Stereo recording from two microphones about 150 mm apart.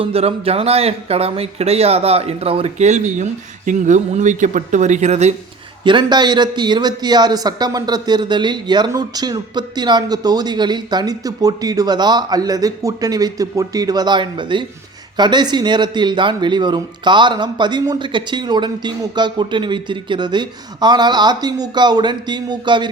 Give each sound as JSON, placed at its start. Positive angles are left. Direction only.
{"t": 0.0, "sound": "speech", "side_deg": -40}
{"t": 5.8, "sound": "a man's voice", "side_deg": -30}